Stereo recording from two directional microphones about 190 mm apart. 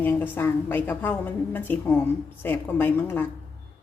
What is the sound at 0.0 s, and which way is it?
A woman's voice, 10° left (ahead or behind).